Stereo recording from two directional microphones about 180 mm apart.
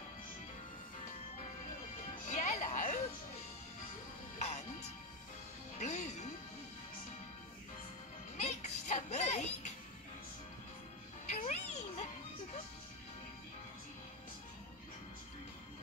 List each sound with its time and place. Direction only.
2.2 s music: 45° left (ahead or behind)
4.4 s music: 40° left (ahead or behind)
5.8 s music: 40° left (ahead or behind)
8.4 s music: 40° left (ahead or behind)
11.2 s music: 40° left (ahead or behind)